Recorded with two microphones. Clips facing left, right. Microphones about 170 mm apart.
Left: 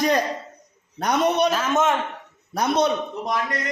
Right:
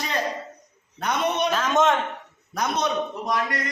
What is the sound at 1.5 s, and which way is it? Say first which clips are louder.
Speech: even; 5° left (ahead or behind).